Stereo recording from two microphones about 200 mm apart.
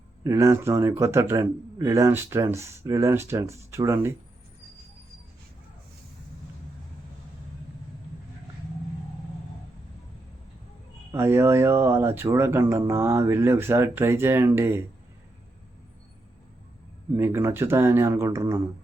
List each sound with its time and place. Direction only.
0.3 s speech: 15° right (ahead or behind)
11.1 s speech: 15° right (ahead or behind)
17.2 s speech: 10° right (ahead or behind)